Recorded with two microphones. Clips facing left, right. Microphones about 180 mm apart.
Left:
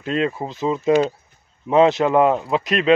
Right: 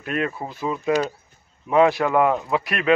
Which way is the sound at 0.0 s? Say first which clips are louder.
Left 4 dB; 25° left (ahead or behind).